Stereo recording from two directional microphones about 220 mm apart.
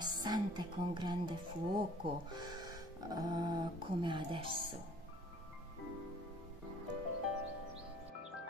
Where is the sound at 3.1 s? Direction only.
20° right (ahead or behind).